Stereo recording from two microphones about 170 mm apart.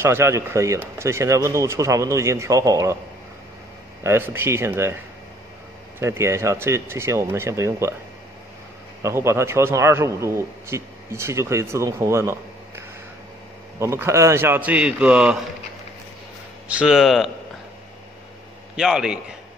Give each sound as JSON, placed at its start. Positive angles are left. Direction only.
{"t": 0.0, "sound": "a man's voice", "side_deg": -15}
{"t": 4.0, "sound": "a man's voice", "side_deg": -15}
{"t": 5.9, "sound": "a man's voice", "side_deg": -15}
{"t": 9.0, "sound": "a man's voice", "side_deg": -15}
{"t": 16.6, "sound": "speech", "side_deg": -5}
{"t": 18.8, "sound": "speech", "side_deg": -5}